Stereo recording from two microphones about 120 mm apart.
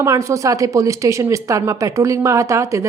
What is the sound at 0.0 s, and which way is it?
Speech, 25° right (ahead or behind).